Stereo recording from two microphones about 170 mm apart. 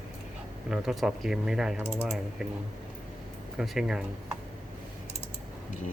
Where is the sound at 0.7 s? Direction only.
Centre (ahead or behind).